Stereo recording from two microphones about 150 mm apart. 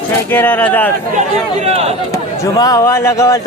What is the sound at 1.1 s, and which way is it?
Speech, 50° right (ahead or behind).